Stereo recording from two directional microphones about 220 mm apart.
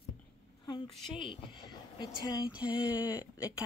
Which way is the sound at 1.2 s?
20° left (ahead or behind).